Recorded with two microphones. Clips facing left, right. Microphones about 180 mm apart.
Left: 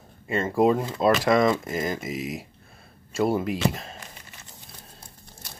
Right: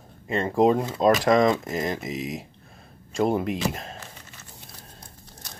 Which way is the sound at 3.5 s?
Centre (ahead or behind).